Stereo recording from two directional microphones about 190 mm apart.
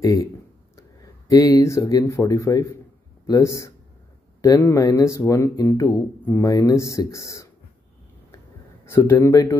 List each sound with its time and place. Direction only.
0.0 s speech: 15° left (ahead or behind)
8.8 s speech: 15° left (ahead or behind)